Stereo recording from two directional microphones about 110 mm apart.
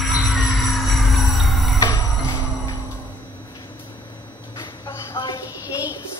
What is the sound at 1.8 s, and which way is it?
Music, 45° left (ahead or behind).